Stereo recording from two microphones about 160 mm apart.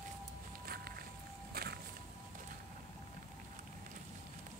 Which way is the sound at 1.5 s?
75° right (ahead or behind).